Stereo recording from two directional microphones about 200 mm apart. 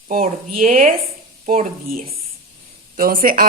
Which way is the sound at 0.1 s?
45° right (ahead or behind).